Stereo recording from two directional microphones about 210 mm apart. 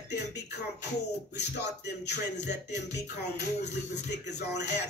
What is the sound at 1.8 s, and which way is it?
Speech, 55° left (ahead or behind).